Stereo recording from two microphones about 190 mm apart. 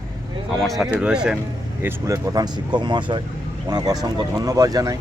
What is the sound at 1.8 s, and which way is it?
Speech, 20° right (ahead or behind).